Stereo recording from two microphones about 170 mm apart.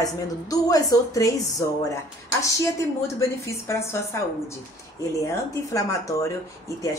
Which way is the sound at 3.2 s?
15° left (ahead or behind).